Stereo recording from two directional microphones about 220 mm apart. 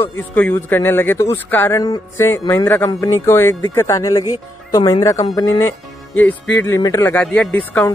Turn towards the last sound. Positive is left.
turn(degrees=10)  # may be behind; listen again after turning